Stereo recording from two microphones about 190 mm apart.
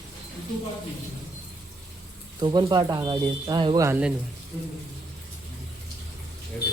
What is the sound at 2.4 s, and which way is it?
Speech, 25° right (ahead or behind).